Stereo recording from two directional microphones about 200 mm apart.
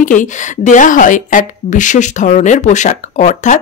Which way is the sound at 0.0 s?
40° left (ahead or behind).